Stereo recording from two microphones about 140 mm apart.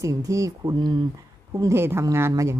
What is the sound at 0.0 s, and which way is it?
A woman's voice, 25° right (ahead or behind).